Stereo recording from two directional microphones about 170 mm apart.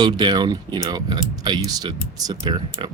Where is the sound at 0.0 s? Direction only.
25° right (ahead or behind).